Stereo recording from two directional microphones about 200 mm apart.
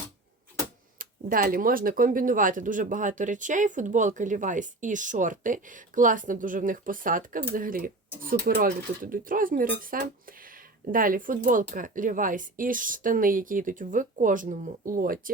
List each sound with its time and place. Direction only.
0.9 s speech: 45° right (ahead or behind)